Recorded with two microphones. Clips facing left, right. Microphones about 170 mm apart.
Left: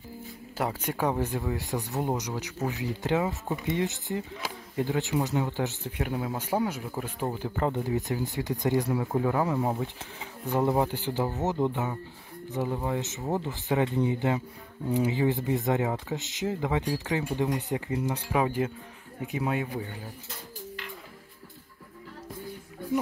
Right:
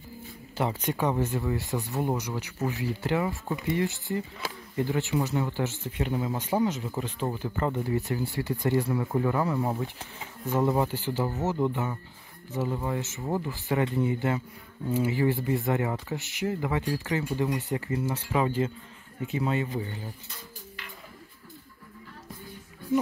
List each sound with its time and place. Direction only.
0.6 s speech: 5° left (ahead or behind)